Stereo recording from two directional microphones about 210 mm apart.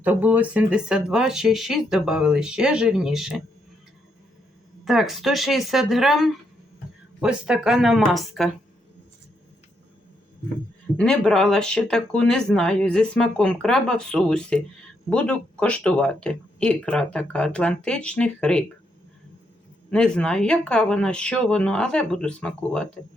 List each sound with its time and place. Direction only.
0.0 s speech: 10° right (ahead or behind)
4.9 s speech: centre (ahead or behind)
10.9 s speech: 5° left (ahead or behind)
19.9 s speech: 5° left (ahead or behind)